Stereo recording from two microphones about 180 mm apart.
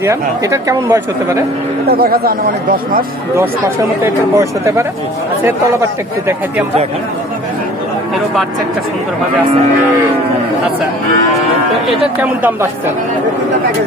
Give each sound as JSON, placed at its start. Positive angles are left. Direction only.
{"t": 0.0, "sound": "speech", "side_deg": -15}
{"t": 1.9, "sound": "speech", "side_deg": -55}
{"t": 4.0, "sound": "speech", "side_deg": -15}
{"t": 12.2, "sound": "speech", "side_deg": -10}